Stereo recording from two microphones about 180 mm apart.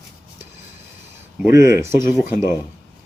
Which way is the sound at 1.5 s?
15° right (ahead or behind).